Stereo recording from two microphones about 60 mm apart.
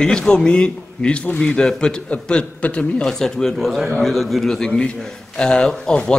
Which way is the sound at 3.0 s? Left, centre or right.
Centre.